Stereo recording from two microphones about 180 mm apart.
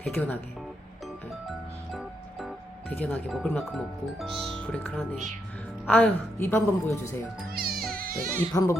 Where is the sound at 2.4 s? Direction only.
10° left (ahead or behind).